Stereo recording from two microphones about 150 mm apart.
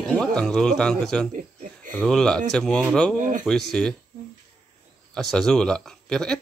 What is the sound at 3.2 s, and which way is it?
Speech, 60° right (ahead or behind).